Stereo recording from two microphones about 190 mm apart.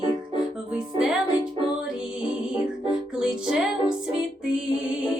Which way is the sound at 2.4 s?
5° right (ahead or behind).